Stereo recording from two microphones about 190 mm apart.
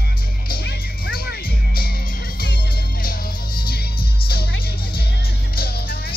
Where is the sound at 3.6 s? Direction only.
55° left (ahead or behind).